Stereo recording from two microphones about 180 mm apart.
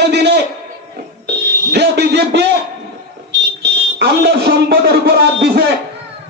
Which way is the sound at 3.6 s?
65° right (ahead or behind).